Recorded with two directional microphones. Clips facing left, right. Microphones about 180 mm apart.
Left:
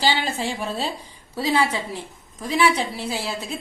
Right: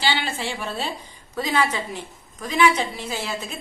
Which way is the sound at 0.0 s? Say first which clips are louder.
Left 2 dB; 40° left (ahead or behind).